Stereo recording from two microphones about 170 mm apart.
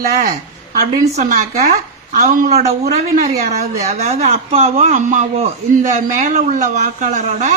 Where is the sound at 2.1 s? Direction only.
50° right (ahead or behind).